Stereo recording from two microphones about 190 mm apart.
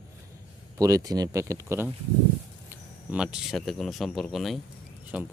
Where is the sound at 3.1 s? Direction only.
5° right (ahead or behind).